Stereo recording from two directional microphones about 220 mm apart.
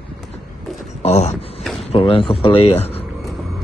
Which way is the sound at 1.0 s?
30° left (ahead or behind).